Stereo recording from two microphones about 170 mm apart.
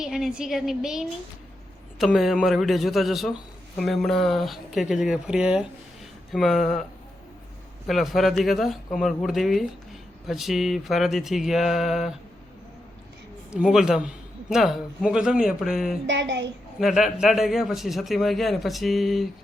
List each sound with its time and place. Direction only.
0.0 s a man's voice: 5° right (ahead or behind)
7.9 s a man's voice: centre (ahead or behind)
13.5 s a man's voice: 5° right (ahead or behind)
16.0 s a child's voice: 90° right
16.8 s a man's voice: 5° right (ahead or behind)